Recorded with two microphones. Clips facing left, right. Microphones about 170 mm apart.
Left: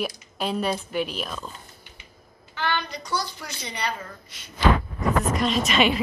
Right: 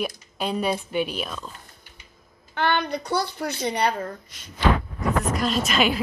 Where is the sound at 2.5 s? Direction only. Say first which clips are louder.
Right 5 dB; 60° right (ahead or behind).